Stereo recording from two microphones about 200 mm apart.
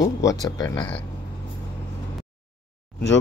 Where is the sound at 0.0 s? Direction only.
15° left (ahead or behind).